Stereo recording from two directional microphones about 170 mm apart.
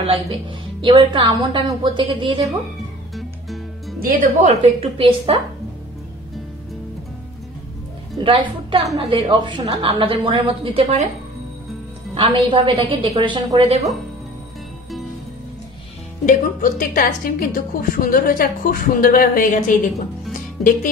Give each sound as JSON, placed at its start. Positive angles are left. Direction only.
{"t": 0.7, "sound": "a woman's voice", "side_deg": -30}
{"t": 4.0, "sound": "speech", "side_deg": -50}
{"t": 4.7, "sound": "a woman's voice", "side_deg": -35}
{"t": 8.2, "sound": "a woman's voice", "side_deg": -30}
{"t": 12.1, "sound": "a woman's voice", "side_deg": -35}
{"t": 16.3, "sound": "a woman's voice", "side_deg": 50}
{"t": 20.3, "sound": "music", "side_deg": 50}